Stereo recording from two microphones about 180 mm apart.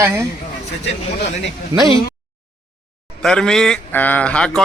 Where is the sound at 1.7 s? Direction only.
20° right (ahead or behind).